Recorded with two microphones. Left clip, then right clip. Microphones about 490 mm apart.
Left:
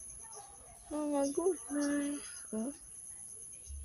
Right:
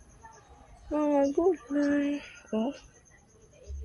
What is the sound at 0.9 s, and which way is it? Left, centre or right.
Speech, left.